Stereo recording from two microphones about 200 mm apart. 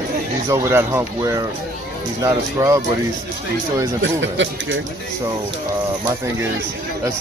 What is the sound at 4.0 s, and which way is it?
Speech, 65° right (ahead or behind).